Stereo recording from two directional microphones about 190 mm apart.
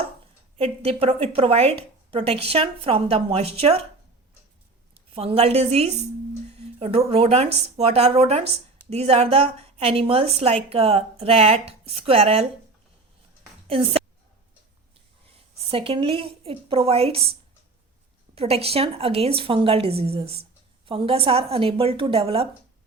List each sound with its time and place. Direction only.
0.5 s a woman's voice: 30° right (ahead or behind)
5.1 s a woman's voice: 30° right (ahead or behind)
13.7 s a woman's voice: 30° right (ahead or behind)
15.3 s a woman's voice: 30° right (ahead or behind)
18.3 s a woman's voice: 30° right (ahead or behind)